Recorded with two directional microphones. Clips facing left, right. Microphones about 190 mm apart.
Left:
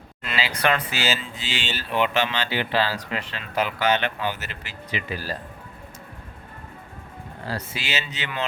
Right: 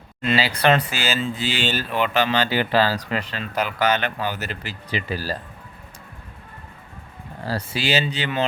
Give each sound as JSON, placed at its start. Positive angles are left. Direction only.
{"t": 0.2, "sound": "speech", "side_deg": -30}
{"t": 0.9, "sound": "speech", "side_deg": -50}
{"t": 7.4, "sound": "speech", "side_deg": -35}